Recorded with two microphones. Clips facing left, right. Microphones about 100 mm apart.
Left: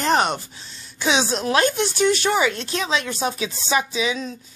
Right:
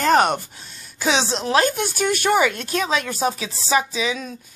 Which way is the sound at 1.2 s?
30° right (ahead or behind).